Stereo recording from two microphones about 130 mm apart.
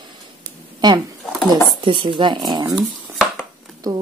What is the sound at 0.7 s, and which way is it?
A woman's voice, 35° right (ahead or behind).